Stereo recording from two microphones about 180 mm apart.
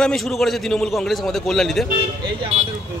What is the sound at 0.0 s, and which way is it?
Speech, 5° left (ahead or behind).